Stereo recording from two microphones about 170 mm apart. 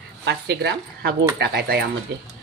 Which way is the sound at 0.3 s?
85° right.